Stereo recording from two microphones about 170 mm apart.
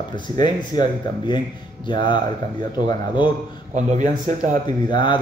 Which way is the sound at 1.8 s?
30° left (ahead or behind).